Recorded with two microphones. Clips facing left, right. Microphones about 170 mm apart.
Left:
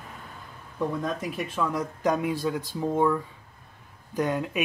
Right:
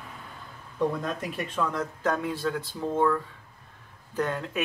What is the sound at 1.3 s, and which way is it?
Speech, 5° left (ahead or behind).